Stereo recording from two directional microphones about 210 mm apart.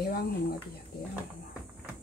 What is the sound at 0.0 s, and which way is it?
Speech, 45° left (ahead or behind).